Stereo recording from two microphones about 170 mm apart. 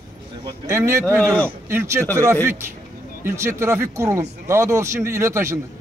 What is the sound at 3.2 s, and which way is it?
A man's voice, 15° right (ahead or behind).